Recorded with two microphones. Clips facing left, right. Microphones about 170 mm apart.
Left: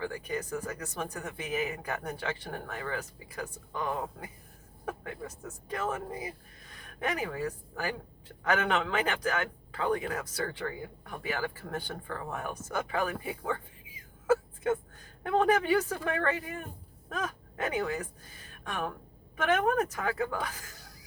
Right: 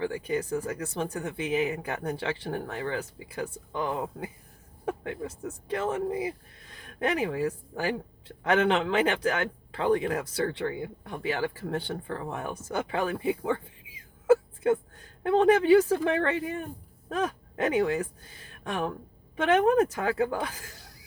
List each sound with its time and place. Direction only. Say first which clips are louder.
0.0 s speech: right 5 dB; 30° right (ahead or behind)
15.3 s speech: right 6 dB; 30° right (ahead or behind)